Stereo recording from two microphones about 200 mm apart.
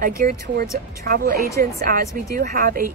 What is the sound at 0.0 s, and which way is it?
A woman's voice, 45° right (ahead or behind).